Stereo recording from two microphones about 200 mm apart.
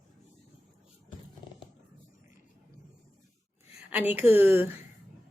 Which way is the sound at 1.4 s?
20° left (ahead or behind).